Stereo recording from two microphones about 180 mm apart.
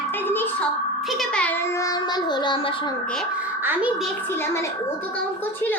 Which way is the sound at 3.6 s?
10° right (ahead or behind).